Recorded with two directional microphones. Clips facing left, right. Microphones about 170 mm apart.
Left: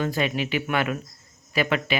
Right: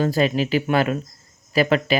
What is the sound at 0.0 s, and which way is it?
Speech, 35° right (ahead or behind).